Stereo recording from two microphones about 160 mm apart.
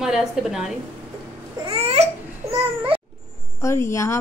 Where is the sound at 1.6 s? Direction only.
40° right (ahead or behind).